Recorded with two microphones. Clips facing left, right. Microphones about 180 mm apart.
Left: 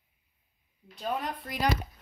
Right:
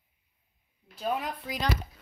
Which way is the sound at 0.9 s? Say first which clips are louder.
Right 1 dB; 5° right (ahead or behind).